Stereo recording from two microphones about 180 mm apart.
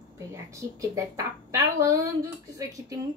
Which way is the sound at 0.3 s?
15° right (ahead or behind).